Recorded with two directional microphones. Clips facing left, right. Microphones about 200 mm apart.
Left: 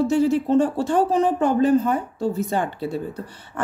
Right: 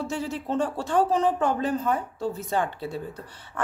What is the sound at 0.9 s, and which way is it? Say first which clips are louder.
Speech: left 3 dB; 10° left (ahead or behind).